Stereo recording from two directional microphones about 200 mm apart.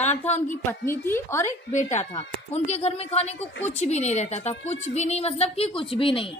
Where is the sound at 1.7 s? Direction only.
35° left (ahead or behind).